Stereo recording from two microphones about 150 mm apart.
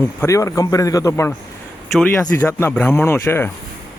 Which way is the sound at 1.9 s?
5° left (ahead or behind).